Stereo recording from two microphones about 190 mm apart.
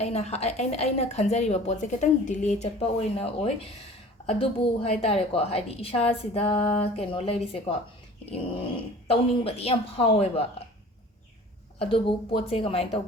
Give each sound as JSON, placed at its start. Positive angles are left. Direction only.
{"t": 0.0, "sound": "a woman's voice", "side_deg": 35}
{"t": 11.8, "sound": "a woman's voice", "side_deg": 30}